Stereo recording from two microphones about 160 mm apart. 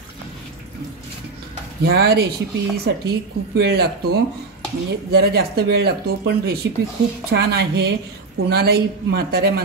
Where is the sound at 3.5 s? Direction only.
85° right.